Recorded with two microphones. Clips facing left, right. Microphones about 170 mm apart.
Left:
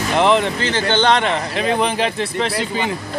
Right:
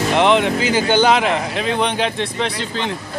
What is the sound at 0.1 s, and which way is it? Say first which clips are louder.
Speech: even; centre (ahead or behind).